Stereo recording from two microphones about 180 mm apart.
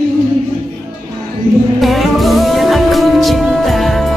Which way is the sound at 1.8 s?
Centre (ahead or behind).